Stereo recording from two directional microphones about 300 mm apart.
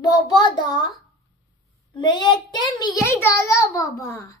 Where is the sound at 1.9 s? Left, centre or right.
Centre.